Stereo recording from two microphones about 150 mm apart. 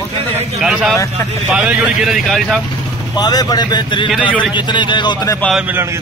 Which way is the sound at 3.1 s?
25° left (ahead or behind).